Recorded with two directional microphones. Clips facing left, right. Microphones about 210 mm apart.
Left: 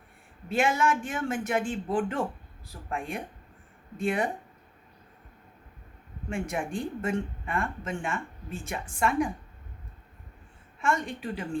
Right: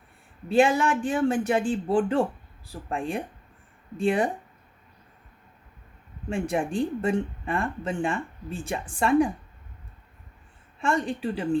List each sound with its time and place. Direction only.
0.4 s speech: 30° right (ahead or behind)
6.3 s speech: 35° right (ahead or behind)
10.8 s speech: 30° right (ahead or behind)